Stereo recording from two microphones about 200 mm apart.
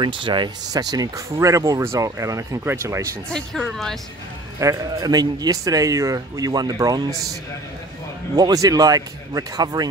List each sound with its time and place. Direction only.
0.0 s speech: 25° right (ahead or behind)
3.3 s speech: 5° left (ahead or behind)
4.6 s speech: 15° right (ahead or behind)
8.4 s speech: 20° right (ahead or behind)